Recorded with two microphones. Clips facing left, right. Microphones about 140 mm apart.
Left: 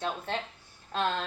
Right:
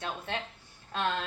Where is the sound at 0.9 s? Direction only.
35° left (ahead or behind).